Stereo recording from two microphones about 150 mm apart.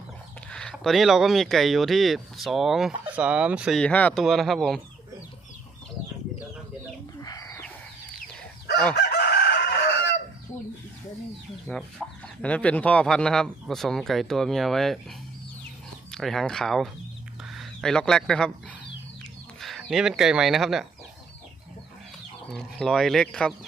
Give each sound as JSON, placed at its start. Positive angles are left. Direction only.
{"t": 0.5, "sound": "speech", "side_deg": 5}
{"t": 3.8, "sound": "speech", "side_deg": 10}
{"t": 7.2, "sound": "chicken", "side_deg": 25}
{"t": 9.0, "sound": "chicken", "side_deg": 90}
{"t": 11.7, "sound": "speech", "side_deg": 5}
{"t": 16.1, "sound": "speech", "side_deg": 0}
{"t": 19.5, "sound": "speech", "side_deg": 0}
{"t": 22.5, "sound": "speech", "side_deg": 5}